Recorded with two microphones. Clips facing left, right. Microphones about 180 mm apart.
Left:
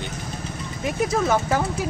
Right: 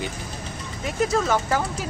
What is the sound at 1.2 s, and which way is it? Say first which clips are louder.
Speech: left 2 dB; 20° left (ahead or behind).